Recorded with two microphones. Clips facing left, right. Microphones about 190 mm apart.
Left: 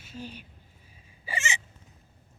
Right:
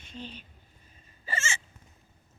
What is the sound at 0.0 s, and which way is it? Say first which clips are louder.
Speech: left 2 dB; 5° left (ahead or behind).